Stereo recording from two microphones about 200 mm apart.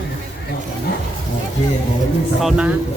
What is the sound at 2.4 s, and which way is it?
Speech, 5° right (ahead or behind).